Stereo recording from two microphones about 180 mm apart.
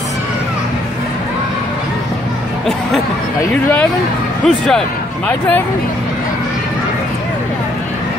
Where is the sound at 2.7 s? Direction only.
Centre (ahead or behind).